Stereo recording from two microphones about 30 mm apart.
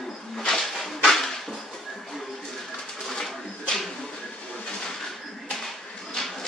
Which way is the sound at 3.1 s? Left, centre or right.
Centre.